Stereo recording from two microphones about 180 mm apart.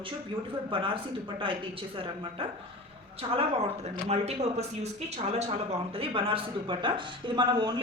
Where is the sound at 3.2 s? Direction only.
30° right (ahead or behind).